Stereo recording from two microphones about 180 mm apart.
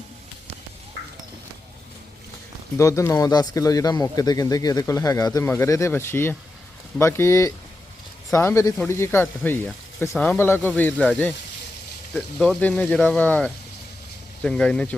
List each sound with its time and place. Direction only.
2.7 s speech: 15° left (ahead or behind)